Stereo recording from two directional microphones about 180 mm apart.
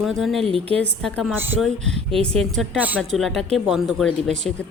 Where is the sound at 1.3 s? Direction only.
10° right (ahead or behind).